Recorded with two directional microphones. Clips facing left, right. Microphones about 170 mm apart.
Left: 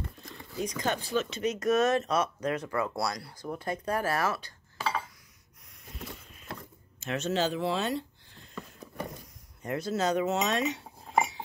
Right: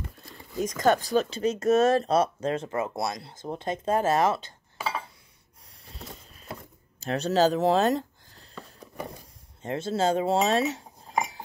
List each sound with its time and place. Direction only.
0.7 s speech: 45° right (ahead or behind); by 4.6 s 20° right (ahead or behind)
5.9 s a sound: 35° right (ahead or behind)
7.0 s speech: 35° right (ahead or behind)
9.6 s speech: 25° right (ahead or behind)